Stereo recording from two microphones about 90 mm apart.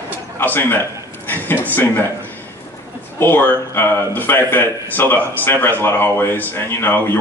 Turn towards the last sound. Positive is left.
turn(degrees=25)  # may be behind; listen again after turning